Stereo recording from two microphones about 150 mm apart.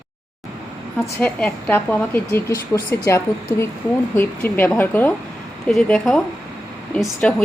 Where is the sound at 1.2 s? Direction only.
10° left (ahead or behind).